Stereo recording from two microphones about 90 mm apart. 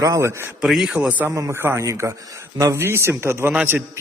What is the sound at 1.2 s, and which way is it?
A man's voice, 35° right (ahead or behind).